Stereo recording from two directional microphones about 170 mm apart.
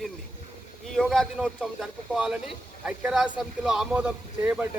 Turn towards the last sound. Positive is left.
turn(degrees=-5)  # may be behind; listen again after turning